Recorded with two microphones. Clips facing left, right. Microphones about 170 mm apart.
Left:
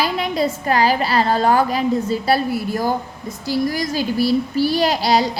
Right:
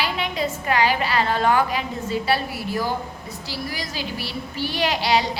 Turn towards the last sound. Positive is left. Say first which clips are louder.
# left 4 dB
turn(degrees=40)  # may be behind; listen again after turning